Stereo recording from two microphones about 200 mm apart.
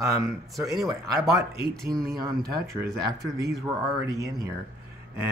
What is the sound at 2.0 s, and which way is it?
Speech, 15° right (ahead or behind).